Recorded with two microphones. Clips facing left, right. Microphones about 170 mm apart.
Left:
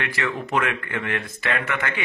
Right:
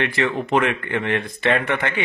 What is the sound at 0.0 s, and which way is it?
Speech, 25° right (ahead or behind).